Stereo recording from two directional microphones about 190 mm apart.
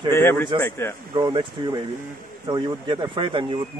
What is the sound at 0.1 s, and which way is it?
Speech, 10° left (ahead or behind).